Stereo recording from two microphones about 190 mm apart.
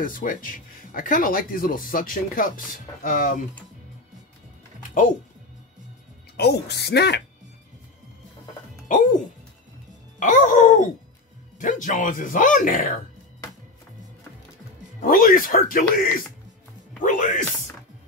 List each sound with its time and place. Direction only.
0.0 s speech: 45° left (ahead or behind)
6.3 s speech: 60° left (ahead or behind)
8.8 s speech: 45° left (ahead or behind)
10.1 s music: 45° left (ahead or behind)
11.6 s speech: 45° left (ahead or behind)
15.0 s speech: 45° left (ahead or behind)